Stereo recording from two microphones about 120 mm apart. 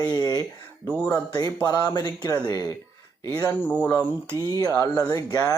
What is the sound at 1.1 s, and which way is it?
Speech, 30° left (ahead or behind).